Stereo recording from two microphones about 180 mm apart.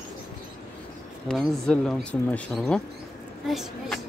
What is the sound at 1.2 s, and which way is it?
Speech, centre (ahead or behind).